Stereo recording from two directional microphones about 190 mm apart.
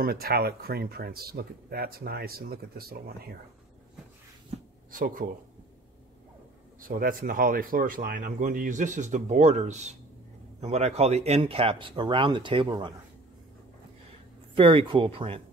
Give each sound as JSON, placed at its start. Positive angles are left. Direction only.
{"t": 0.0, "sound": "speech", "side_deg": -55}
{"t": 4.9, "sound": "speech", "side_deg": -45}
{"t": 6.8, "sound": "speech", "side_deg": -50}
{"t": 14.5, "sound": "speech", "side_deg": -25}